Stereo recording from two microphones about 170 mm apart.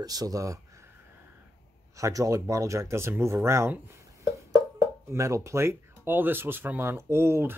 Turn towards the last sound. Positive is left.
turn(degrees=-15)  # may be behind; listen again after turning